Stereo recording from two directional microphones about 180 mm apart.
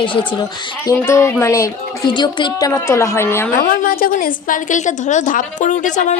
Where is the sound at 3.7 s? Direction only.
55° left (ahead or behind).